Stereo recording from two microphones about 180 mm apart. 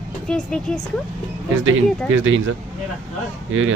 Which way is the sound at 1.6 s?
90° right.